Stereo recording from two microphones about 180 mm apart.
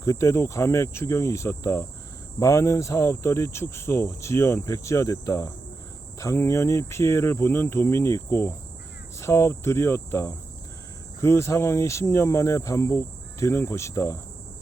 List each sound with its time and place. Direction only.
0.0 s cricket: 15° left (ahead or behind)